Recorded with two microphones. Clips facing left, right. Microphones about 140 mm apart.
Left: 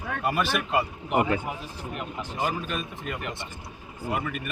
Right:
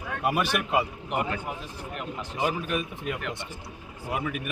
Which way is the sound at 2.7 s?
10° right (ahead or behind).